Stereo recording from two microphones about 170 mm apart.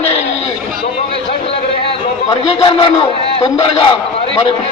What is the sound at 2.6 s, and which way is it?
A man's voice, 30° left (ahead or behind).